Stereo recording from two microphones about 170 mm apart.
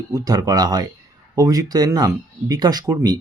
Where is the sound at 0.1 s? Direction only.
20° right (ahead or behind).